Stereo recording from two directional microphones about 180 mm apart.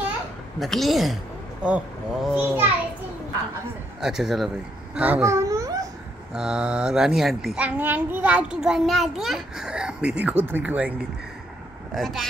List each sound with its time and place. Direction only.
0.6 s a child's voice: centre (ahead or behind)
4.0 s a child's voice: centre (ahead or behind)
4.9 s babbling: 10° right (ahead or behind)
6.3 s a child's voice: 5° right (ahead or behind)